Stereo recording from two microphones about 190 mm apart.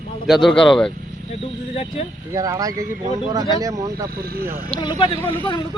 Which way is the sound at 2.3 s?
15° right (ahead or behind).